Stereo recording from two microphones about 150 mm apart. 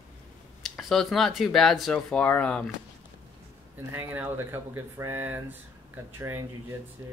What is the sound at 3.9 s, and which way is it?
Speech, 15° right (ahead or behind).